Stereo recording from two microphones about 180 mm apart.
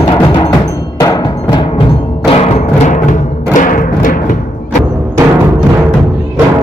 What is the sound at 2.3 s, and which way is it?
Music, 35° left (ahead or behind).